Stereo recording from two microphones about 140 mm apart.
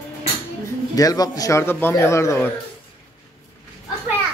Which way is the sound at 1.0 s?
25° left (ahead or behind).